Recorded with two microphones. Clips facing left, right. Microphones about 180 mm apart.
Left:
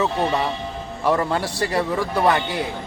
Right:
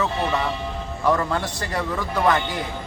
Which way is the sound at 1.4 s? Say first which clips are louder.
Left 4 dB; 10° left (ahead or behind).